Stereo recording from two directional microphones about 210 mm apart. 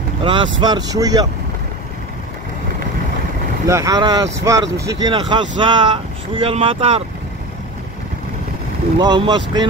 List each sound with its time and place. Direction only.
0.2 s speech: 25° right (ahead or behind)
3.6 s speech: 15° right (ahead or behind)
9.0 s speech: 20° right (ahead or behind)